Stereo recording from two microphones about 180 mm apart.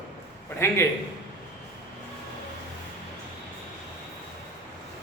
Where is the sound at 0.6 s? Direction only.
15° left (ahead or behind).